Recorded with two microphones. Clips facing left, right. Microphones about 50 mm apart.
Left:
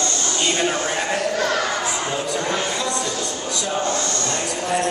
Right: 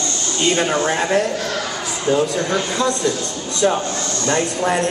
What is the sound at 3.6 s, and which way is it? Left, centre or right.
Speech, right.